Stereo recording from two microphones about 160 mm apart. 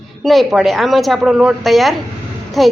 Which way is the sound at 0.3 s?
Centre (ahead or behind).